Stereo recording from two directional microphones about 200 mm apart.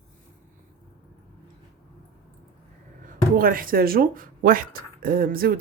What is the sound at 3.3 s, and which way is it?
Speech, 45° right (ahead or behind).